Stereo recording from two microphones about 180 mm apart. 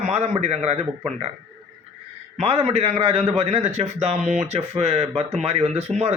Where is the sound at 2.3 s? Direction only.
35° right (ahead or behind).